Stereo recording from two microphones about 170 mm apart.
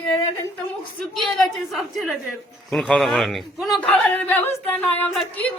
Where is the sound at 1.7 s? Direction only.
Centre (ahead or behind).